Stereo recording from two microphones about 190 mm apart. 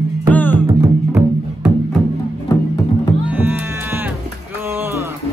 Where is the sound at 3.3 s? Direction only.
10° right (ahead or behind).